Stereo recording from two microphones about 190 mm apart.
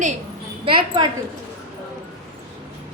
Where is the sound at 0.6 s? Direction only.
25° right (ahead or behind).